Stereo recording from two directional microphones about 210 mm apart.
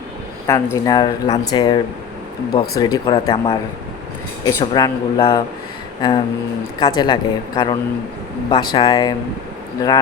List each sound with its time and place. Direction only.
0.4 s speech: 15° left (ahead or behind)